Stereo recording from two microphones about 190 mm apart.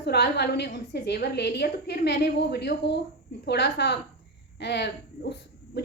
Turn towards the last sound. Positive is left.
turn(degrees=60)  # may be behind; listen again after turning